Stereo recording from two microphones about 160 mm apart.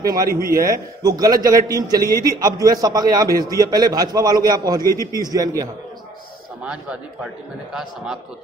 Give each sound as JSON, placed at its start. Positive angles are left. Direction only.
{"t": 0.3, "sound": "a man's voice", "side_deg": -65}
{"t": 1.0, "sound": "a man's voice", "side_deg": -25}
{"t": 4.8, "sound": "a man's voice", "side_deg": 20}
{"t": 5.1, "sound": "a man's voice", "side_deg": -25}
{"t": 6.6, "sound": "a man's voice", "side_deg": -5}